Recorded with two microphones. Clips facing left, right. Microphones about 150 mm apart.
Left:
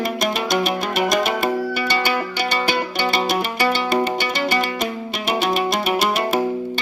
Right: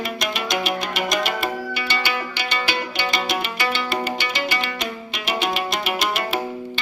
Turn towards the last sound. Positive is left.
turn(degrees=40)  # may be behind; listen again after turning